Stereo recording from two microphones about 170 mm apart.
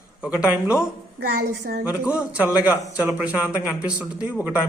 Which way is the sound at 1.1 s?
65° right (ahead or behind).